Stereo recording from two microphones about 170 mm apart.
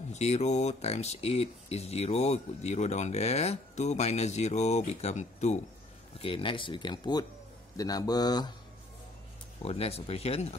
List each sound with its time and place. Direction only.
0.1 s speech: 40° left (ahead or behind)
6.1 s a man's voice: 30° left (ahead or behind)
9.6 s speech: 35° left (ahead or behind)